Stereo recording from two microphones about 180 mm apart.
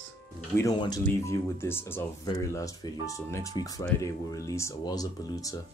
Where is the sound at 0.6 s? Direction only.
20° left (ahead or behind).